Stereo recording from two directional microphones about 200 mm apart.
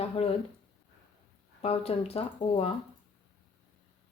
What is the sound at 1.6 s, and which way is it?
Speech, 30° left (ahead or behind).